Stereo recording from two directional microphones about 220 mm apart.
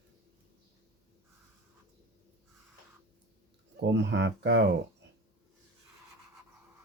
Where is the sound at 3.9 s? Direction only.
55° right (ahead or behind).